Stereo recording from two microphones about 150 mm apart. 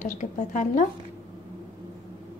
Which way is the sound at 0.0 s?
55° left (ahead or behind).